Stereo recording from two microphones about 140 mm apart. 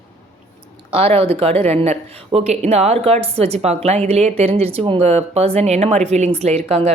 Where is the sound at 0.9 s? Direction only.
45° right (ahead or behind).